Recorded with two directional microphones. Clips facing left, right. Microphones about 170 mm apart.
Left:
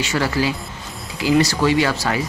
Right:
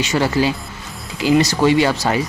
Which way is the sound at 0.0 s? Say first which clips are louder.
Right 3 dB; 20° right (ahead or behind).